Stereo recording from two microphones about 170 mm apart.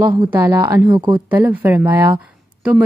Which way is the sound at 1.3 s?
10° right (ahead or behind).